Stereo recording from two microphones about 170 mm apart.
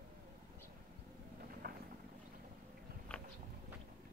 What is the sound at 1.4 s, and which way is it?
Vehicle, 60° right (ahead or behind).